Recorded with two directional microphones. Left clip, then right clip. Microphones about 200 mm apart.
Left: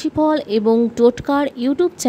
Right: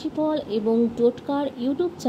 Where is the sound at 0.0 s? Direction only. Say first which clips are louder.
Left 7 dB; 50° left (ahead or behind).